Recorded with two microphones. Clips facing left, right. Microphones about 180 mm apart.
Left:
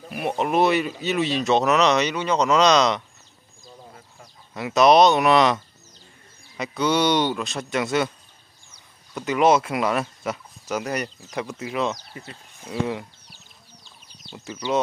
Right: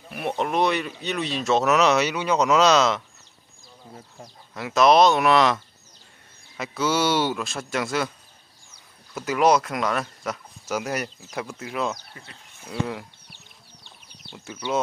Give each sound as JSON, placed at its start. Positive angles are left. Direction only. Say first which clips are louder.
{"t": 0.1, "sound": "speech", "louder": "left 2 dB", "side_deg": 5}
{"t": 4.6, "sound": "speech", "louder": "left 2 dB", "side_deg": 0}
{"t": 9.1, "sound": "speech", "louder": "left 1 dB", "side_deg": 0}
{"t": 10.7, "sound": "speech", "louder": "left 1 dB", "side_deg": -5}
{"t": 12.1, "sound": "speech", "louder": "left 6 dB", "side_deg": 30}
{"t": 12.6, "sound": "speech", "louder": "left 3 dB", "side_deg": 5}
{"t": 13.8, "sound": "a sound", "louder": "right 3 dB", "side_deg": -60}
{"t": 14.3, "sound": "speech", "louder": "left 2 dB", "side_deg": 0}